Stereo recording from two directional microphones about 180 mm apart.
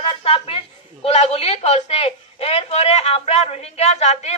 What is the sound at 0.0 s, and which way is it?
A woman's voice, 30° left (ahead or behind).